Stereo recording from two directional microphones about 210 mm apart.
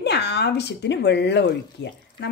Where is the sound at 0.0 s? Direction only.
55° left (ahead or behind).